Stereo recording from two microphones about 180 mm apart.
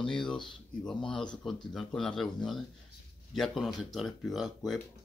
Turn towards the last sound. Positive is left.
turn(degrees=0)  # may be behind; listen again after turning